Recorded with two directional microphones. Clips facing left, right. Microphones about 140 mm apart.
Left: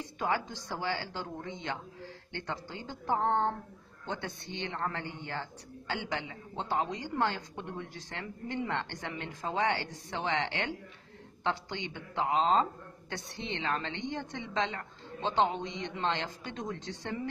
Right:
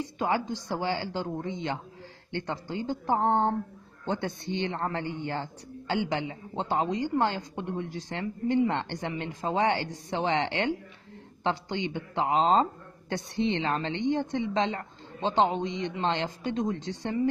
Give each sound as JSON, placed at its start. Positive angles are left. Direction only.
{"t": 0.5, "sound": "a woman's voice", "side_deg": -15}